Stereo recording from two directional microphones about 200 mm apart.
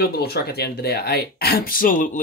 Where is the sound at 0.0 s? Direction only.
50° left (ahead or behind).